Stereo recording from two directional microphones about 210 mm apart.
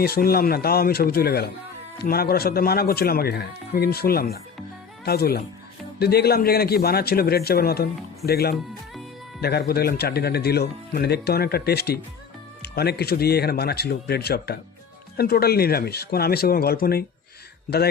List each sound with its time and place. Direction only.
0.0 s speech: 45° left (ahead or behind)